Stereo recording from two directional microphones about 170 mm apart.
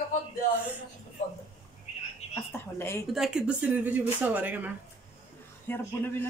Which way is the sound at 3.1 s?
5° right (ahead or behind).